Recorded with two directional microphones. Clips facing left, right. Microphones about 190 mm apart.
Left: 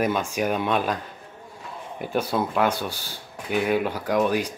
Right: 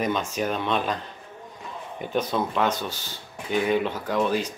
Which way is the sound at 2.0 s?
10° left (ahead or behind).